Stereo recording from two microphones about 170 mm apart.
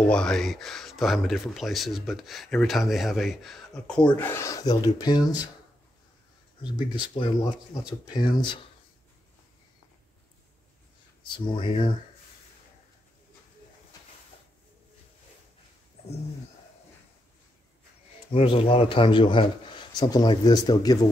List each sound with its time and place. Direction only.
0.1 s speech: 5° left (ahead or behind); by 5.3 s 25° left (ahead or behind)
6.6 s speech: 30° left (ahead or behind)
11.2 s speech: 30° left (ahead or behind)
18.3 s speech: 35° left (ahead or behind)